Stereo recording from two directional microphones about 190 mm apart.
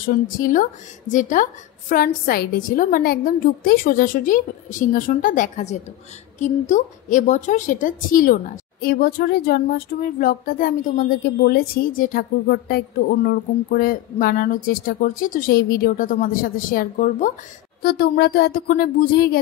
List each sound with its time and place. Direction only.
0.1 s a woman's voice: 45° left (ahead or behind)